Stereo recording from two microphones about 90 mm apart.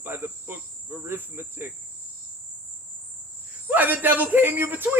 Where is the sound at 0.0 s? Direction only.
25° right (ahead or behind).